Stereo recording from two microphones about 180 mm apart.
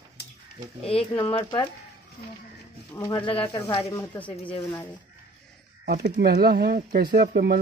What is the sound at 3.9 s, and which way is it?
Speech, 15° left (ahead or behind).